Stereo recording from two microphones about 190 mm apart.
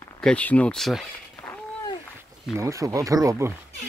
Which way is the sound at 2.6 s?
15° right (ahead or behind).